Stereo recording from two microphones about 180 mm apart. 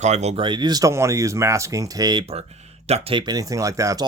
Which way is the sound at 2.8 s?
35° right (ahead or behind).